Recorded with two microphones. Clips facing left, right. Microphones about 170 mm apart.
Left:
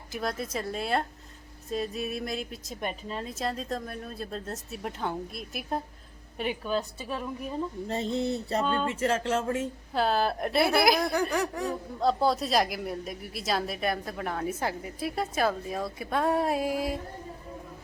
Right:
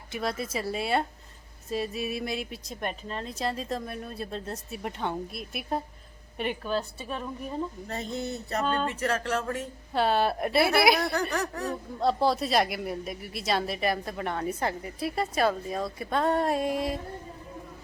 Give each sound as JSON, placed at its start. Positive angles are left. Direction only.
{"t": 0.1, "sound": "a woman's voice", "side_deg": 0}
{"t": 7.9, "sound": "speech", "side_deg": 30}
{"t": 8.6, "sound": "a woman's voice", "side_deg": 0}
{"t": 8.9, "sound": "speech", "side_deg": 25}
{"t": 9.9, "sound": "a woman's voice", "side_deg": 0}
{"t": 11.1, "sound": "speech", "side_deg": 10}
{"t": 11.9, "sound": "a woman's voice", "side_deg": 0}